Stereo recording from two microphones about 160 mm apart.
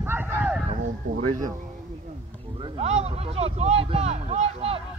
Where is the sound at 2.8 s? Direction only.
40° right (ahead or behind).